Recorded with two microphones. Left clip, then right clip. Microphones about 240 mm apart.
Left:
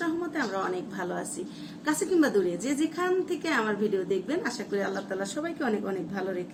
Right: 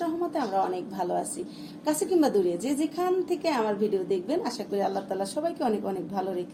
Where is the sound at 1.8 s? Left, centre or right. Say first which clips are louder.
Right 1 dB; right.